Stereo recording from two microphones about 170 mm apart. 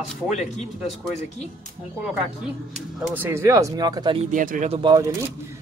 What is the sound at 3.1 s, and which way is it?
Speech, 15° right (ahead or behind).